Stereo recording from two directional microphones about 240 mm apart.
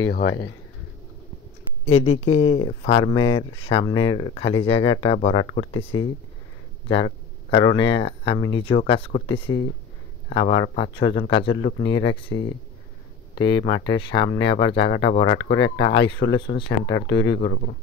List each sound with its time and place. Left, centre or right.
0.0 s speech: left
2.0 s speech: left
2.4 s speech: left
7.5 s speech: centre
9.5 s speech: left
10.3 s speech: left
15.3 s speech: left
15.8 s speech: left
17.1 s speech: left
17.4 s speech: left